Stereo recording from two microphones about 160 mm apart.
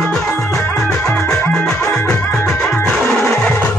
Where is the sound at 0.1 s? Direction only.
5° left (ahead or behind).